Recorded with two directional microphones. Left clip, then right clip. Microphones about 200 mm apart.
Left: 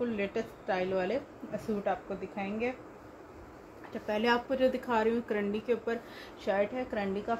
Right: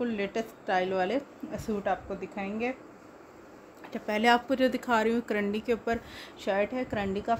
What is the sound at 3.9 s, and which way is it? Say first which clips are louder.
Speech: right 5 dB; 60° right (ahead or behind).